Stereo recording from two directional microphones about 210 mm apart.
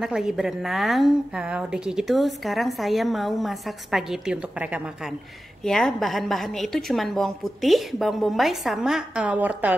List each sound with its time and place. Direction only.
0.0 s a woman's voice: centre (ahead or behind)